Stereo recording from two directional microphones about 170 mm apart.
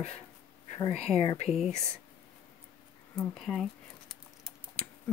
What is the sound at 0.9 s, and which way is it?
Speech, 35° left (ahead or behind).